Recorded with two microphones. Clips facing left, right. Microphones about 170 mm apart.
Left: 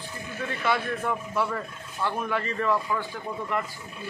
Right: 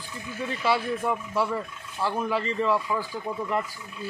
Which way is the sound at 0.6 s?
10° right (ahead or behind).